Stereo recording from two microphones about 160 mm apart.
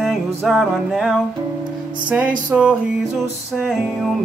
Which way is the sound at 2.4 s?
5° right (ahead or behind).